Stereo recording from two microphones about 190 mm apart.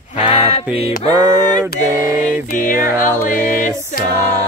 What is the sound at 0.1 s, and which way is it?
Music, 30° left (ahead or behind).